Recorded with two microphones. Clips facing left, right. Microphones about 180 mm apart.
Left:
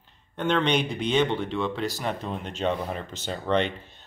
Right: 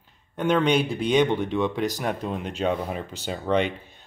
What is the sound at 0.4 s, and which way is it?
Speech, 10° right (ahead or behind).